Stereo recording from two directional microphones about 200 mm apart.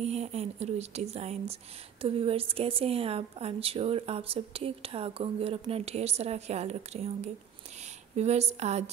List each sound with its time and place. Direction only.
0.0 s a woman's voice: 35° right (ahead or behind)